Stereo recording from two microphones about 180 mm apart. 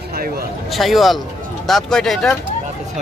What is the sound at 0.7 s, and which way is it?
Speech, centre (ahead or behind).